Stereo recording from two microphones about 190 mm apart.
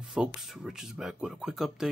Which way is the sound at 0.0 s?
5° right (ahead or behind).